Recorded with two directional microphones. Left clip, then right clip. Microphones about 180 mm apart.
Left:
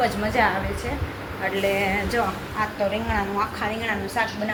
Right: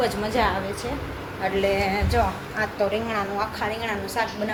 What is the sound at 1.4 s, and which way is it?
A woman's voice, 15° right (ahead or behind).